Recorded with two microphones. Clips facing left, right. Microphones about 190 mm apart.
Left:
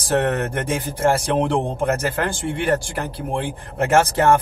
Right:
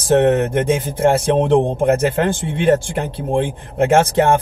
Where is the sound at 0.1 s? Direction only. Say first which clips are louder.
Right 7 dB; 20° right (ahead or behind).